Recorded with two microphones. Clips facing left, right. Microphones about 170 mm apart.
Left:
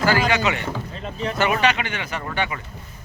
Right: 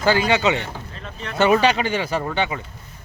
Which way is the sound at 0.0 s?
20° right (ahead or behind).